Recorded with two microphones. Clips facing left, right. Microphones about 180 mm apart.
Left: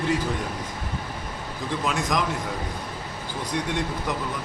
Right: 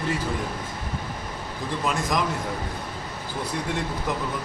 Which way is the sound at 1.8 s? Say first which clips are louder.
Even; centre (ahead or behind).